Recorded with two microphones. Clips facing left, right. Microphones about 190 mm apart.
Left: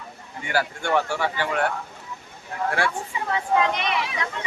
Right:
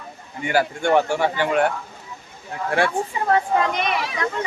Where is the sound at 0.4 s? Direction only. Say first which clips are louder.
Right 5 dB; 15° right (ahead or behind).